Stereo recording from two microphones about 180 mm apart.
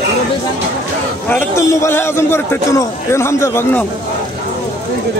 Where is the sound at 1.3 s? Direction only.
15° left (ahead or behind).